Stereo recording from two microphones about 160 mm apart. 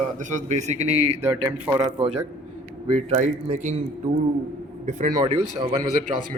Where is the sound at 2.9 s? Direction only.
45° right (ahead or behind).